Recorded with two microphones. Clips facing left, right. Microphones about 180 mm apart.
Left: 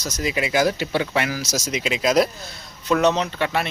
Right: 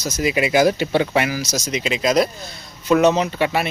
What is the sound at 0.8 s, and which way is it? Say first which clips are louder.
Speech: right 4 dB; 20° right (ahead or behind).